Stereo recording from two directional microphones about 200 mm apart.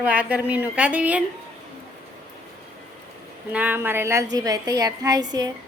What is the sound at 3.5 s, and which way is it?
A woman's voice, 10° right (ahead or behind).